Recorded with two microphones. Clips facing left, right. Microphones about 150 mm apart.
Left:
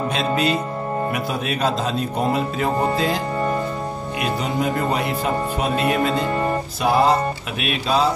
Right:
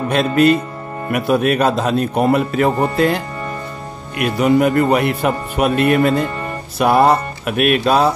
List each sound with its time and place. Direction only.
0.1 s speech: 55° right (ahead or behind)
4.2 s speech: 65° right (ahead or behind)